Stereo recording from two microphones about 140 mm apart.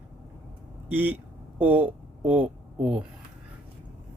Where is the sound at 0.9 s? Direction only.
15° right (ahead or behind).